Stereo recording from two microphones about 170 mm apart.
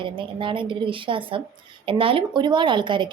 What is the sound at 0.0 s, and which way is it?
A woman's voice, 30° right (ahead or behind).